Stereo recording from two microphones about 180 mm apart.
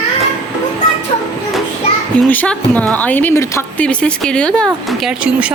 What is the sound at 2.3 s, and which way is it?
Speech, 10° left (ahead or behind).